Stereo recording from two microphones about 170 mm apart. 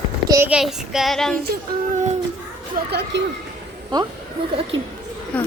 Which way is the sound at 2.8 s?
75° right (ahead or behind).